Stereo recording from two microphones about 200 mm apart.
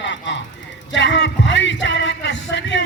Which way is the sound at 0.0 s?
65° left (ahead or behind).